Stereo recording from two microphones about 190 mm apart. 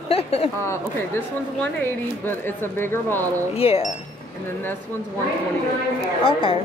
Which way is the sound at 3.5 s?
30° left (ahead or behind).